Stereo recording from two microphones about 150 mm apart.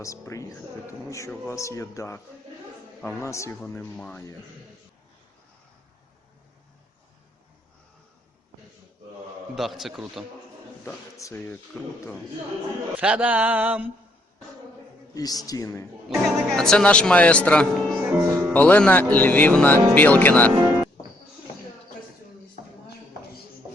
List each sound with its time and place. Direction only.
0.0 s a man's voice: 20° left (ahead or behind)
1.5 s a man's voice: 20° left (ahead or behind)
9.6 s a man's voice: centre (ahead or behind)
10.8 s speech: 20° left (ahead or behind)
11.7 s a man's voice: 5° left (ahead or behind)
13.0 s a sound: 10° right (ahead or behind)
15.1 s a man's voice: 25° left (ahead or behind)
16.0 s speech: centre (ahead or behind)
18.0 s a sound: 15° right (ahead or behind)
18.5 s speech: 10° left (ahead or behind)